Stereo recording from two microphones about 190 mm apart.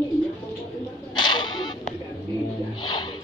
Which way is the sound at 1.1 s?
25° left (ahead or behind).